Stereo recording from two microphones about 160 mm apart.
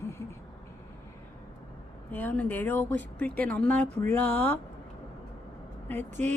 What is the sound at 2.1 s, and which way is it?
Speech, 10° left (ahead or behind).